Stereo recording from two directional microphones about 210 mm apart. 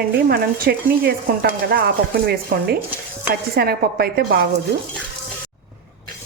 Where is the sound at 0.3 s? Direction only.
45° right (ahead or behind).